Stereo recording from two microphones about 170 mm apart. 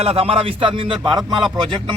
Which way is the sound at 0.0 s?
35° right (ahead or behind).